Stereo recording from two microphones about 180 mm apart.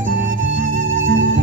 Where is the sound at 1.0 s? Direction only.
90° right.